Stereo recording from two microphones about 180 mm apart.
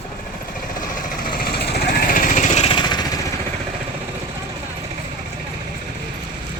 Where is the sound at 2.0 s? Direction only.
50° left (ahead or behind); by 3.1 s 25° left (ahead or behind).